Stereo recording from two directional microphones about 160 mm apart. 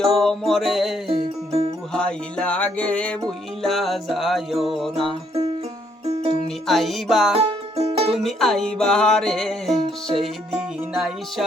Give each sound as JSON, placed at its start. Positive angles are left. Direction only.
{"t": 0.0, "sound": "music", "side_deg": 0}
{"t": 1.0, "sound": "music", "side_deg": -40}
{"t": 1.9, "sound": "music", "side_deg": 5}
{"t": 6.1, "sound": "music", "side_deg": -40}
{"t": 6.7, "sound": "music", "side_deg": 0}
{"t": 7.3, "sound": "music", "side_deg": -40}
{"t": 8.1, "sound": "music", "side_deg": 0}